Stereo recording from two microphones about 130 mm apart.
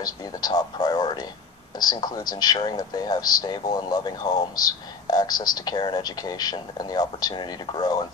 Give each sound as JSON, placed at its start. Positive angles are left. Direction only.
{"t": 0.0, "sound": "speech", "side_deg": 30}